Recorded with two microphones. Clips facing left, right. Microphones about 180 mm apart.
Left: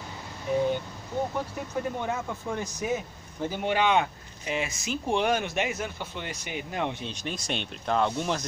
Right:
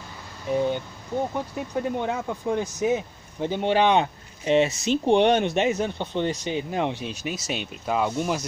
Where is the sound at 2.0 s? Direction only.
15° right (ahead or behind).